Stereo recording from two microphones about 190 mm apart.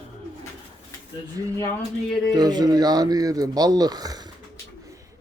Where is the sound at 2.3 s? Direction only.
20° right (ahead or behind).